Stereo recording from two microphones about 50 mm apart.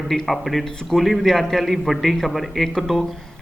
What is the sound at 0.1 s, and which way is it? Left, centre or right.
A man's voice, centre.